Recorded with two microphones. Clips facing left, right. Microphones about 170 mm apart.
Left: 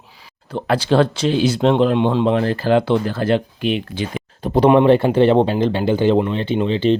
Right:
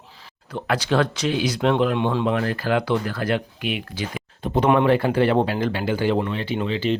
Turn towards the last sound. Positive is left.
turn(degrees=30)  # may be behind; listen again after turning